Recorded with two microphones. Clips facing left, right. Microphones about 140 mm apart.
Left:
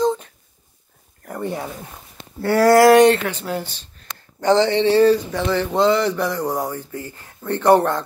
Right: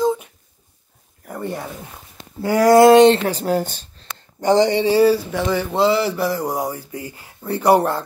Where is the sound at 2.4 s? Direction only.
15° right (ahead or behind); by 3.9 s 45° right (ahead or behind).